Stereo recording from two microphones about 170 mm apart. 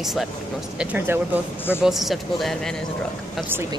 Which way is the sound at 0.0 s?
Centre (ahead or behind).